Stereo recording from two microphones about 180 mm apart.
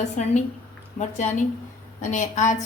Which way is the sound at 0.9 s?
40° left (ahead or behind).